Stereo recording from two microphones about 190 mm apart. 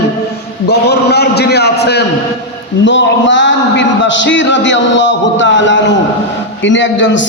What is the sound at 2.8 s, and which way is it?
A man's voice, 75° left (ahead or behind).